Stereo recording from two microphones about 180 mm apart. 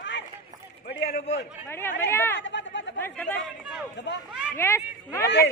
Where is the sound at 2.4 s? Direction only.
85° left.